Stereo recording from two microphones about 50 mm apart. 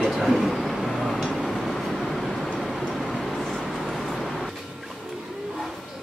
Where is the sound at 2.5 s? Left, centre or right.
Centre.